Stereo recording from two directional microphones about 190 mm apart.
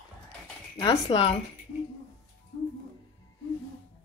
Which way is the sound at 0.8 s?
25° left (ahead or behind).